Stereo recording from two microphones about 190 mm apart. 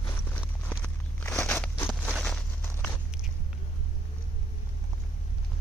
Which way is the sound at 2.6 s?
15° left (ahead or behind).